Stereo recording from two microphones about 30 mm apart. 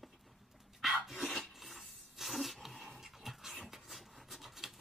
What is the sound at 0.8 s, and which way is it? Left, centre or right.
Filing, centre.